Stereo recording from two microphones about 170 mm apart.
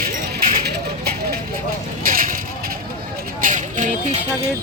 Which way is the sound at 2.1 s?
55° right (ahead or behind).